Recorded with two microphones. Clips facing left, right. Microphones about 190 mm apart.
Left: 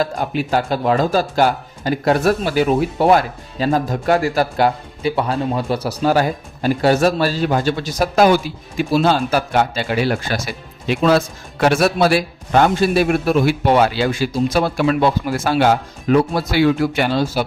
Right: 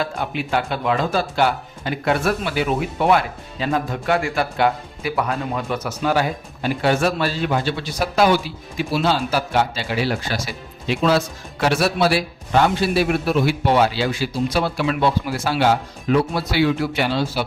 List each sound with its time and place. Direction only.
0.0 s a man's voice: 40° left (ahead or behind)